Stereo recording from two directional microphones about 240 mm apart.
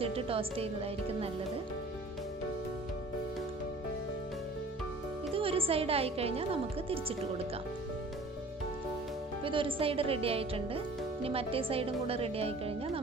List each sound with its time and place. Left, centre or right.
0.0 s a woman's voice: right
5.3 s a woman's voice: right
9.4 s a woman's voice: right